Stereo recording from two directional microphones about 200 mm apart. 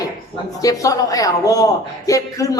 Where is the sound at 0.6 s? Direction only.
15° left (ahead or behind).